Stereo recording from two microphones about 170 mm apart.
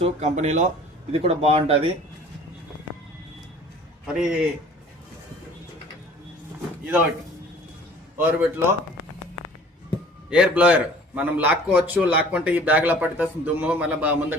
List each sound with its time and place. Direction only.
0.0 s speech: 40° right (ahead or behind)
4.0 s a man's voice: 5° right (ahead or behind)
8.2 s a man's voice: 10° right (ahead or behind)
10.2 s a man's voice: 5° right (ahead or behind)